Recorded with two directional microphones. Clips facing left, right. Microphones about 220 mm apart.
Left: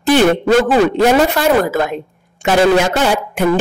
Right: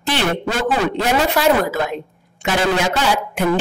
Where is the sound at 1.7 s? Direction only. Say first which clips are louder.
Left 4 dB; 50° left (ahead or behind).